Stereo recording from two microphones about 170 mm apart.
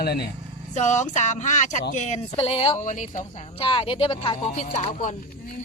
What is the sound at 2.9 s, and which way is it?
Speech, 45° left (ahead or behind).